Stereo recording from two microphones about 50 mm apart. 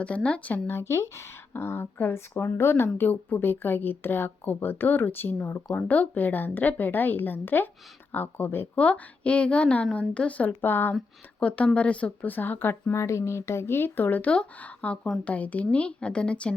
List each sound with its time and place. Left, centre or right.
0.0 s a woman's voice: left
0.7 s speech: left
5.9 s a woman's voice: left
8.7 s a woman's voice: left
10.6 s speech: left
11.3 s a woman's voice: left
12.3 s a woman's voice: left
12.9 s a woman's voice: left